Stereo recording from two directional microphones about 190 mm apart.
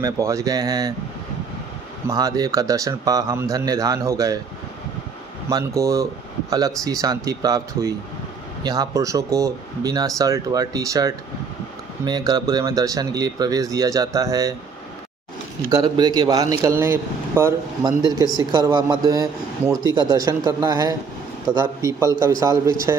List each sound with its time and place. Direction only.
0.0 s speech: 15° right (ahead or behind)
2.0 s speech: 20° right (ahead or behind)
5.5 s speech: 15° right (ahead or behind)
15.7 s speech: 20° right (ahead or behind)